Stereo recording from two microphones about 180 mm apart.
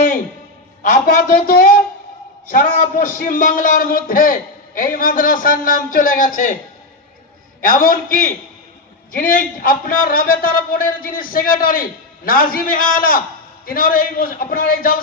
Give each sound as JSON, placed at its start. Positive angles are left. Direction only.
{"t": 0.8, "sound": "a man's voice", "side_deg": 50}
{"t": 7.6, "sound": "a man's voice", "side_deg": 50}